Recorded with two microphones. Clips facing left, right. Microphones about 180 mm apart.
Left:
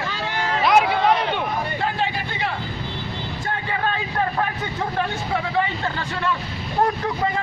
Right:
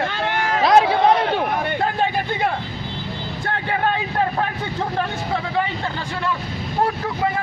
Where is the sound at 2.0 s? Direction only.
50° right (ahead or behind).